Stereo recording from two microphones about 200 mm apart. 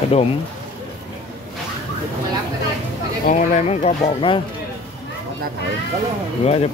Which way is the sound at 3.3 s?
30° left (ahead or behind).